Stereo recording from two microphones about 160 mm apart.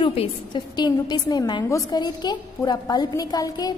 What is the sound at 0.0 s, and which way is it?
A woman's voice, 35° left (ahead or behind).